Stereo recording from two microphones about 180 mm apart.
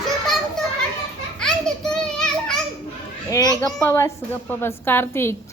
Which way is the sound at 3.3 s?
20° left (ahead or behind).